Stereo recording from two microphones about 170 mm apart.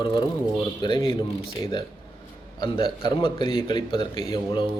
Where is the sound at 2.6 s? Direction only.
30° left (ahead or behind).